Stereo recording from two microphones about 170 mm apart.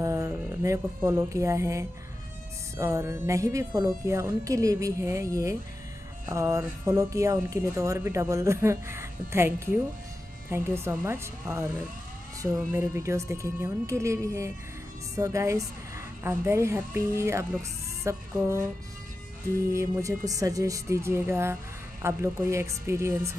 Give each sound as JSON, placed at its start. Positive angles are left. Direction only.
{"t": 0.0, "sound": "speech", "side_deg": -20}
{"t": 19.7, "sound": "speech", "side_deg": -20}